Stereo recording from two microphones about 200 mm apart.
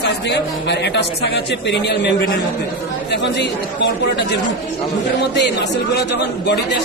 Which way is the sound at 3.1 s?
60° left (ahead or behind).